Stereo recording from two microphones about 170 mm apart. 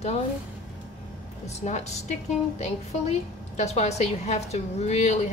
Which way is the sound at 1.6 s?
40° left (ahead or behind).